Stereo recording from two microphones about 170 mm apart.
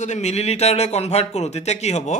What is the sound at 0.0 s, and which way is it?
A man's voice, 45° left (ahead or behind).